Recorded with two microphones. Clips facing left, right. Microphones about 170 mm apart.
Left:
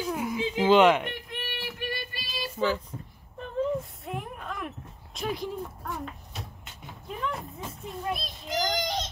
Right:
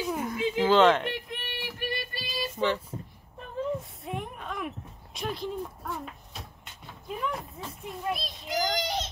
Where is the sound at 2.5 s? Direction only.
Centre (ahead or behind).